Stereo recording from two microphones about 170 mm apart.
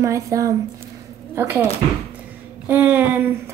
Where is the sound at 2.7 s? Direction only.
10° right (ahead or behind).